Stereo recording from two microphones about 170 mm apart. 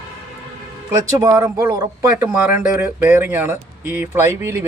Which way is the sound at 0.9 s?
20° right (ahead or behind).